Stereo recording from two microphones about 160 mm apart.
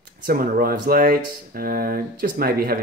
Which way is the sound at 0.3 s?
65° right (ahead or behind).